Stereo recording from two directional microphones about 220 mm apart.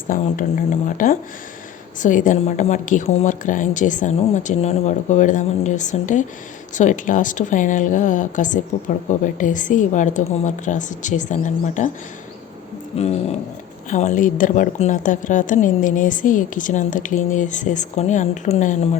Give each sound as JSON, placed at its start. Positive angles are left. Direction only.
{"t": 0.1, "sound": "a woman's voice", "side_deg": 35}
{"t": 12.9, "sound": "a woman's voice", "side_deg": 30}